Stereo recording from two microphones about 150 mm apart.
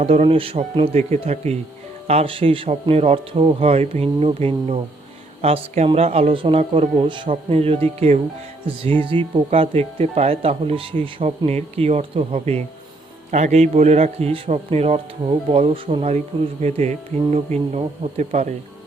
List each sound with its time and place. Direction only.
0.0 s speech: 40° right (ahead or behind)